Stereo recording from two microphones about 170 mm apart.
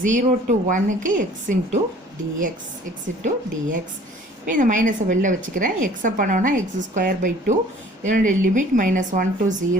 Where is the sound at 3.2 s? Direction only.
45° right (ahead or behind).